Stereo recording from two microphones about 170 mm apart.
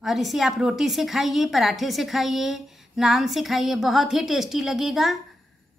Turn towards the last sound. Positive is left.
turn(degrees=0)  # may be behind; listen again after turning